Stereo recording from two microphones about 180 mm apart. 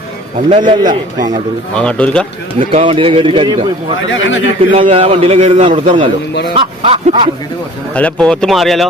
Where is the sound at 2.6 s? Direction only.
30° right (ahead or behind).